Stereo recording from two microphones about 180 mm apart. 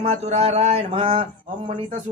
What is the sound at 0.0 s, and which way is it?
A man's voice, 35° right (ahead or behind).